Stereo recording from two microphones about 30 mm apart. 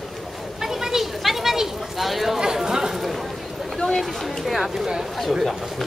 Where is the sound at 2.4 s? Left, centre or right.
Right.